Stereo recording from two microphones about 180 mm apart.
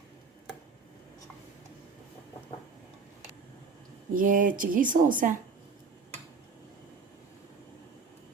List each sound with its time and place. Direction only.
4.1 s a woman's voice: 50° right (ahead or behind)